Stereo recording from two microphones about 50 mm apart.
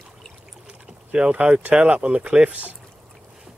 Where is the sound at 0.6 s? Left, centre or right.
Right.